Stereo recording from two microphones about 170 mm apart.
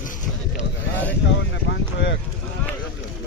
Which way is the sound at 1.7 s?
90° left.